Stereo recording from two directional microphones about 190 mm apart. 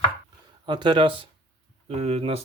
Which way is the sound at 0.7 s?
25° right (ahead or behind).